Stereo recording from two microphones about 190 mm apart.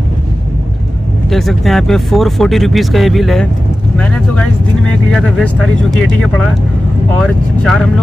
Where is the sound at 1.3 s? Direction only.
Centre (ahead or behind).